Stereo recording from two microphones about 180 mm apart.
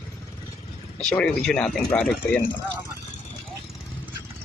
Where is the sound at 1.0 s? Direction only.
5° left (ahead or behind).